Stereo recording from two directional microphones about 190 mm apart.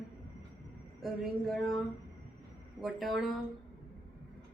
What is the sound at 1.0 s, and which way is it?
Speech, centre (ahead or behind).